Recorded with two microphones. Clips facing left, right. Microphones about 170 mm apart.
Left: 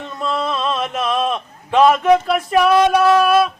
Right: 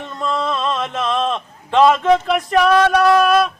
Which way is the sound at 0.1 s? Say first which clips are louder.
Even; 10° left (ahead or behind).